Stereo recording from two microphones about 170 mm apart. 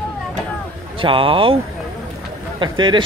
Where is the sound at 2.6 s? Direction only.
25° right (ahead or behind).